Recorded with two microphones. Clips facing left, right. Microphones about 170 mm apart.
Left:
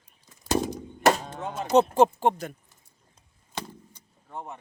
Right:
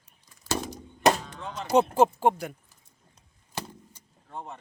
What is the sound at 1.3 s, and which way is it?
Speech, 50° left (ahead or behind).